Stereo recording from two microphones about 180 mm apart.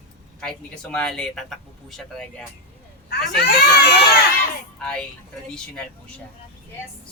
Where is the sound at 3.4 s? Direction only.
60° left (ahead or behind).